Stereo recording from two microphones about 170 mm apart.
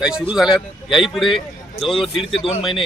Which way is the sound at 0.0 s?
5° right (ahead or behind).